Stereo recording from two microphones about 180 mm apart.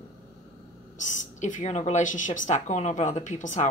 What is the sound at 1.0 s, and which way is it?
A woman's voice, 40° left (ahead or behind).